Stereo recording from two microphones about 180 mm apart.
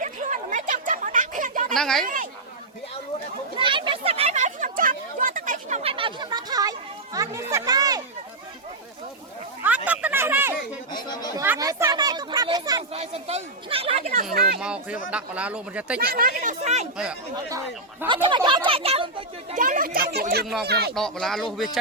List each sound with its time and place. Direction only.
0.0 s a sound: 45° right (ahead or behind)
1.7 s speech: centre (ahead or behind)
3.6 s a sound: 30° right (ahead or behind)
9.6 s a sound: 10° right (ahead or behind)
10.9 s speech: 20° left (ahead or behind)
11.3 s a child's voice: 15° right (ahead or behind)
12.9 s speech: 35° right (ahead or behind)
14.6 s speech: 5° right (ahead or behind)
16.0 s a child's voice: 55° right (ahead or behind); by 16.8 s 40° right (ahead or behind)
18.1 s a child's voice: 25° right (ahead or behind)
19.5 s a child's voice: 50° right (ahead or behind)
20.9 s speech: centre (ahead or behind)